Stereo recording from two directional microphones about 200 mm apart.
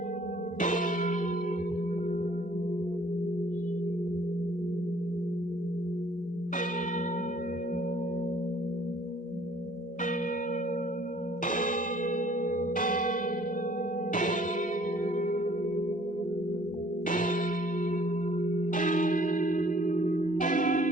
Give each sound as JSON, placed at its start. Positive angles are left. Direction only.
{"t": 0.6, "sound": "church bell", "side_deg": 40}
{"t": 11.4, "sound": "a sound", "side_deg": 40}
{"t": 14.1, "sound": "music", "side_deg": 40}
{"t": 15.0, "sound": "singing bowl", "side_deg": 40}
{"t": 17.1, "sound": "music", "side_deg": 40}
{"t": 17.9, "sound": "church bell", "side_deg": 40}